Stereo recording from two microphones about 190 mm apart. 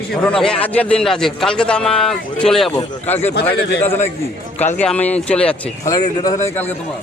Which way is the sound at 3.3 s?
60° left (ahead or behind).